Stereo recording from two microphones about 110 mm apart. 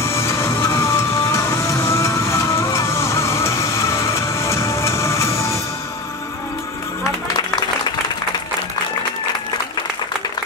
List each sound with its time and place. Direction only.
0.0 s music: 25° left (ahead or behind)
7.3 s music: 40° left (ahead or behind)